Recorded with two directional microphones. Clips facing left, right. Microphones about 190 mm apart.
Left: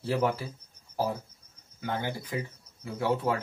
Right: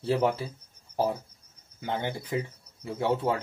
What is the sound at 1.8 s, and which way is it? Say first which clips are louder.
Speech: right 1 dB; 25° right (ahead or behind).